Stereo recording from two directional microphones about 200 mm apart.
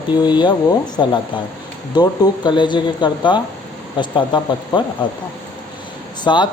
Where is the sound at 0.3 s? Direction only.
20° left (ahead or behind).